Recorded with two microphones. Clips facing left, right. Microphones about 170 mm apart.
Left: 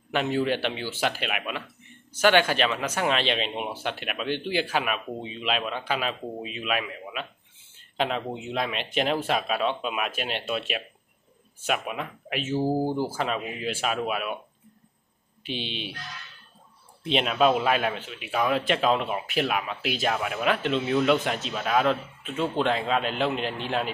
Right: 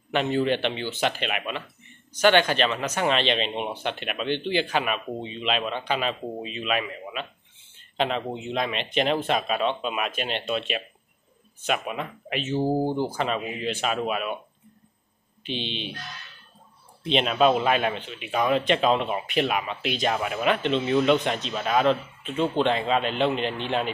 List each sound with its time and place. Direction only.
0.1 s a man's voice: 5° left (ahead or behind)
8.3 s a man's voice: 5° left (ahead or behind)
12.6 s speech: 20° right (ahead or behind)
12.9 s a man's voice: 5° left (ahead or behind)
15.4 s speech: 5° left (ahead or behind)
17.0 s a man's voice: 5° left (ahead or behind)